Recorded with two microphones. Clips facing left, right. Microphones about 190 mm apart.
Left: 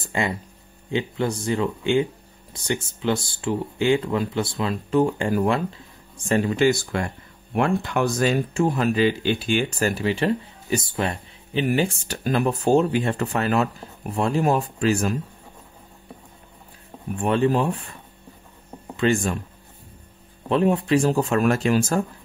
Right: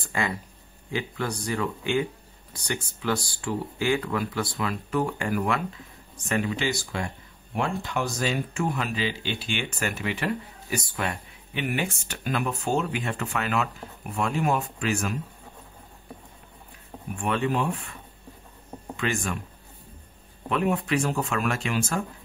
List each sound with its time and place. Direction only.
0.1 s speech: 25° left (ahead or behind)
6.5 s speech: 50° left (ahead or behind)
8.5 s speech: 35° left (ahead or behind)
17.2 s speech: 35° left (ahead or behind)
18.9 s speech: 30° left (ahead or behind)
20.4 s speech: 30° left (ahead or behind)